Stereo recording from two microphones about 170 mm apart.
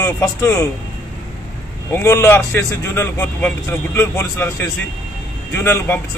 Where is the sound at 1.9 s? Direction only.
15° left (ahead or behind).